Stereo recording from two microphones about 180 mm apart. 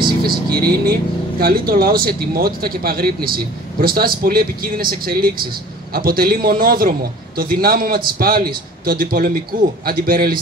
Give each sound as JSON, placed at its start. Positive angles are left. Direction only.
{"t": 0.0, "sound": "vehicle", "side_deg": -55}
{"t": 1.4, "sound": "a man's voice", "side_deg": -55}